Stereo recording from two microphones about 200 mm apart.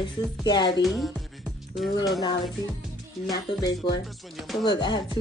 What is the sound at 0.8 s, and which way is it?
Music, centre (ahead or behind).